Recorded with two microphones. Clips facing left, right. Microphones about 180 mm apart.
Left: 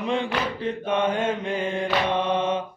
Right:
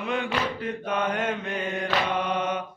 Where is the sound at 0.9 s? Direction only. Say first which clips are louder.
Left 4 dB; 25° left (ahead or behind).